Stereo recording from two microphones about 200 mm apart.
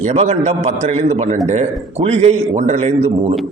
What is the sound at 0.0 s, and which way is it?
Speech, 35° right (ahead or behind).